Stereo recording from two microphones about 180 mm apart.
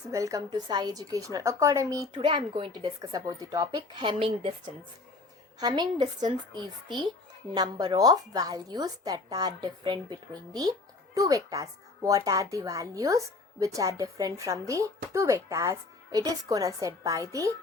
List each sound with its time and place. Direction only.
0.1 s a woman's voice: 20° right (ahead or behind)